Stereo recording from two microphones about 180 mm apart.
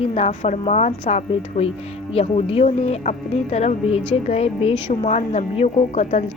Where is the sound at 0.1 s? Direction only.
35° left (ahead or behind).